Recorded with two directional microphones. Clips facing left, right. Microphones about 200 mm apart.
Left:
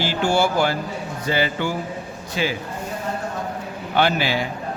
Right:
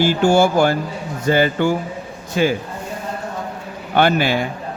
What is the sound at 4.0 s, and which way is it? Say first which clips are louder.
Speech: right 4 dB; 50° right (ahead or behind).